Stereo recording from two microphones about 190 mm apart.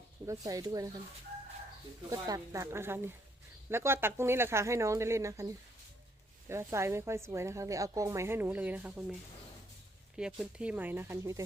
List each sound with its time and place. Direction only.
0.3 s speech: 20° right (ahead or behind)
2.0 s a woman's voice: 20° right (ahead or behind)
6.5 s a woman's voice: 15° right (ahead or behind)
10.2 s a woman's voice: 5° right (ahead or behind)